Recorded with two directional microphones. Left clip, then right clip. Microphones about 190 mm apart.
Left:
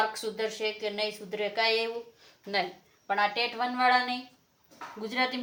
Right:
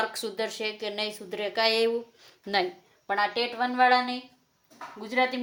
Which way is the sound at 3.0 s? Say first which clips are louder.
Right 1 dB; 50° right (ahead or behind).